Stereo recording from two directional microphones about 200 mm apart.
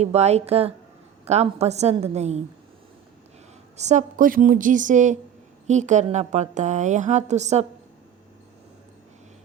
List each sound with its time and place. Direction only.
0.0 s a woman's voice: 35° right (ahead or behind)
3.8 s a woman's voice: 35° right (ahead or behind)